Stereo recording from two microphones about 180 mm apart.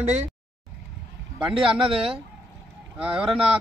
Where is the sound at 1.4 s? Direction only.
30° right (ahead or behind).